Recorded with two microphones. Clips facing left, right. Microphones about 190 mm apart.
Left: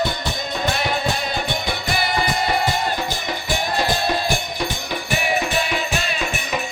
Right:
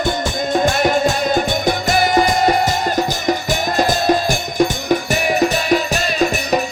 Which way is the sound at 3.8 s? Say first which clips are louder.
Right 7 dB; 45° right (ahead or behind).